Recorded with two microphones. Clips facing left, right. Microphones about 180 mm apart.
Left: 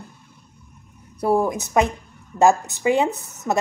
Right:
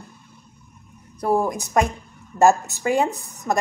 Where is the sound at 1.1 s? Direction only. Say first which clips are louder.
Left 1 dB; 5° left (ahead or behind).